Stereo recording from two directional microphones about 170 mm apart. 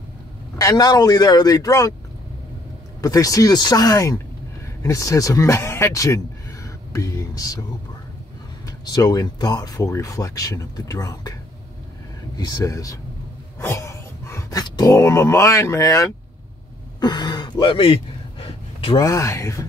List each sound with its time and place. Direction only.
0.6 s speech: 20° left (ahead or behind)
3.0 s speech: 20° left (ahead or behind)
8.6 s speech: 25° left (ahead or behind)
12.4 s speech: 25° left (ahead or behind)
18.4 s a sound: 35° left (ahead or behind)
18.9 s speech: 20° left (ahead or behind)